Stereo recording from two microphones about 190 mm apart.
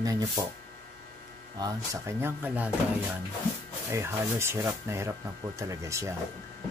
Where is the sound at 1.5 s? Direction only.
15° right (ahead or behind).